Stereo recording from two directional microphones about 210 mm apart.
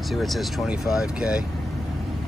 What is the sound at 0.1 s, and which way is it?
Speech, centre (ahead or behind).